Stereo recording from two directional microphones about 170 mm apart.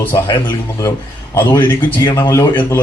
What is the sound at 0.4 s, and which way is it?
A man's voice, 20° left (ahead or behind).